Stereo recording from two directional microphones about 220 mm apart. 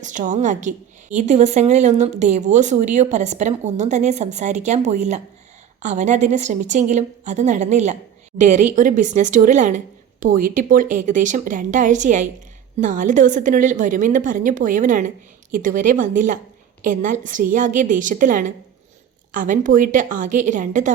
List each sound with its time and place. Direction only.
0.0 s speech: 35° right (ahead or behind)